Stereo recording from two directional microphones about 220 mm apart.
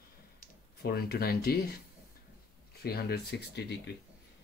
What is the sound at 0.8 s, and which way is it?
Speech, 45° left (ahead or behind).